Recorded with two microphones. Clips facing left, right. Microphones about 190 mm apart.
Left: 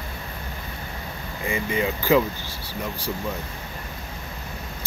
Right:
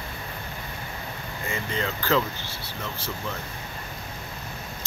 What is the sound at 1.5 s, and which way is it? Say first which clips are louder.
Speech: left 5 dB; 15° left (ahead or behind).